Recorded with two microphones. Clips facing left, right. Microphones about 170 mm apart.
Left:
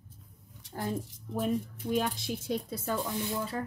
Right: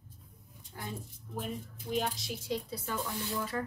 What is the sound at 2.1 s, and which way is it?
Speech, 55° left (ahead or behind).